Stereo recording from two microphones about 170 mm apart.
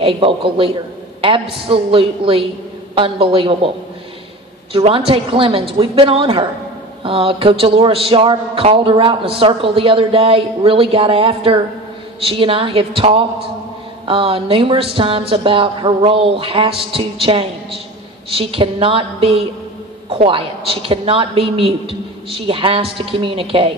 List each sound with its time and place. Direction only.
0.0 s a man's voice: 30° right (ahead or behind)
4.7 s a man's voice: 30° right (ahead or behind)